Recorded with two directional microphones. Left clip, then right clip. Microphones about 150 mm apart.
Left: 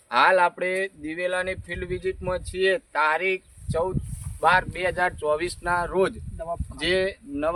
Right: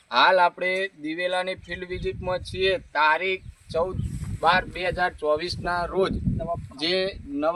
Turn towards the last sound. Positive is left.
turn(degrees=15)  # may be behind; listen again after turning